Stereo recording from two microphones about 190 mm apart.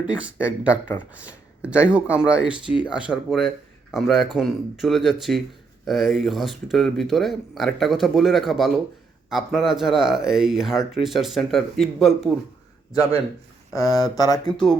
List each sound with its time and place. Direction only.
0.0 s speech: 5° right (ahead or behind)
13.7 s speech: 20° left (ahead or behind)
14.5 s speech: centre (ahead or behind)